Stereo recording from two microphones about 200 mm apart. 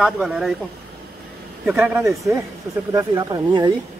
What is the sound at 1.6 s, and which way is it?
Speech, 5° right (ahead or behind).